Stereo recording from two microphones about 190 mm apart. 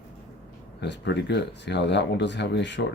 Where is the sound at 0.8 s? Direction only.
65° left (ahead or behind).